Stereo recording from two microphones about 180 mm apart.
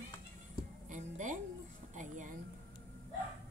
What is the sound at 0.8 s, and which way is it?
Speech, 45° right (ahead or behind).